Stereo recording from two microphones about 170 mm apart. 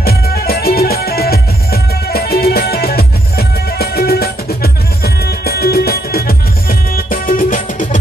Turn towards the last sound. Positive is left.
turn(degrees=55)  # may be behind; listen again after turning